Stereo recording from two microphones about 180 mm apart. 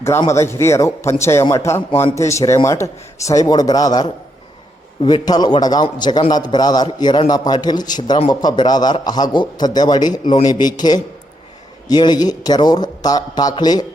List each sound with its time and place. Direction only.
0.3 s a man's voice: 15° left (ahead or behind)